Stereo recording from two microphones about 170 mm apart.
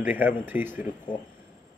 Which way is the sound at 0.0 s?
10° right (ahead or behind).